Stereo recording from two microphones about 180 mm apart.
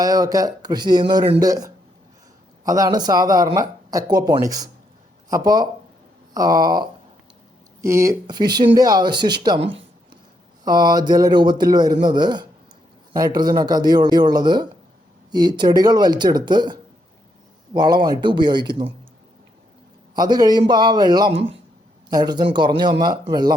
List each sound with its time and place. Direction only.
0.0 s speech: 20° right (ahead or behind)
17.7 s speech: 20° right (ahead or behind)
20.1 s speech: 20° right (ahead or behind)